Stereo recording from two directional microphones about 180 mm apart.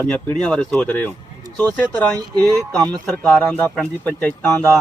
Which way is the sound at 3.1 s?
5° left (ahead or behind).